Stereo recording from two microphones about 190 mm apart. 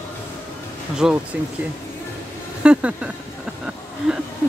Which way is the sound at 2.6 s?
5° right (ahead or behind).